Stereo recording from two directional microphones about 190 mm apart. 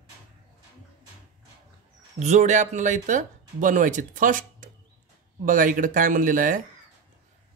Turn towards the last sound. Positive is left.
turn(degrees=-45)  # may be behind; listen again after turning